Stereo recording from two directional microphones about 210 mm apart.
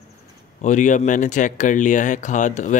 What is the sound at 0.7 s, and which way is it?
Speech, 35° left (ahead or behind).